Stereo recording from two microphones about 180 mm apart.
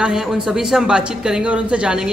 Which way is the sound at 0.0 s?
5° right (ahead or behind).